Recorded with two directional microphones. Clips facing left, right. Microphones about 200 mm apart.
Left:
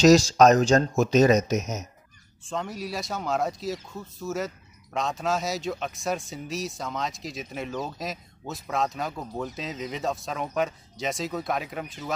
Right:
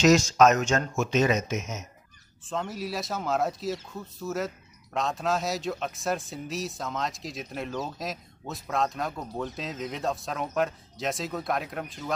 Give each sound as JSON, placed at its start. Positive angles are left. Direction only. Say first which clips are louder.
{"t": 0.0, "sound": "speech", "louder": "left 3 dB", "side_deg": 35}
{"t": 2.4, "sound": "speech", "louder": "even", "side_deg": 0}